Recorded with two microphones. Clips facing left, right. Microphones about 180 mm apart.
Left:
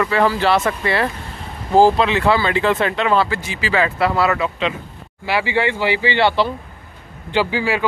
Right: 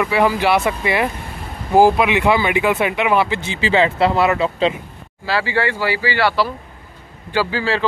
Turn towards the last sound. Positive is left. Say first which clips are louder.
# left 1 dB
turn(degrees=15)  # may be behind; listen again after turning